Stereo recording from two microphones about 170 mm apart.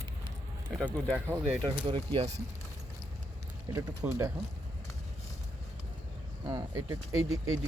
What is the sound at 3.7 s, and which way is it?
Speech, 20° right (ahead or behind).